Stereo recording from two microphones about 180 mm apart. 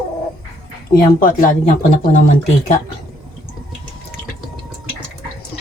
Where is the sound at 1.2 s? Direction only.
45° left (ahead or behind).